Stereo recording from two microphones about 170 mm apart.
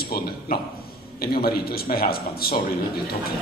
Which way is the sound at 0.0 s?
65° left (ahead or behind).